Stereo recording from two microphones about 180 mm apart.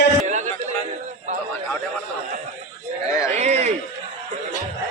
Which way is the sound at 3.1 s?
15° left (ahead or behind).